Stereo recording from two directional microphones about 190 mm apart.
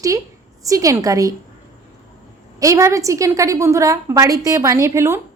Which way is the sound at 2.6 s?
15° right (ahead or behind).